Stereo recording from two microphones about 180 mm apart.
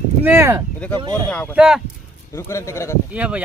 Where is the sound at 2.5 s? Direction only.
15° left (ahead or behind).